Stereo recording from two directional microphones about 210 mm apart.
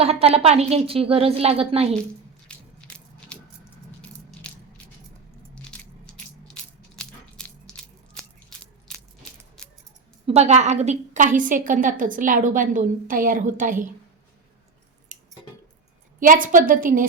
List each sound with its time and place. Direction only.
0.0 s a woman's voice: 30° right (ahead or behind)
2.5 s biting: 5° left (ahead or behind)
6.1 s biting: 5° left (ahead or behind)
8.9 s biting: centre (ahead or behind)
10.2 s a woman's voice: 30° right (ahead or behind)
15.1 s squish: 40° right (ahead or behind)
16.2 s a woman's voice: 40° right (ahead or behind)